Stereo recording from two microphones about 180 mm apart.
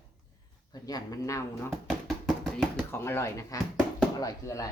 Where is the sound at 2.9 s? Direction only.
15° left (ahead or behind).